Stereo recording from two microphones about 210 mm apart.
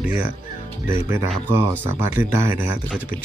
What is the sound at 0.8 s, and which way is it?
Speech, 10° right (ahead or behind).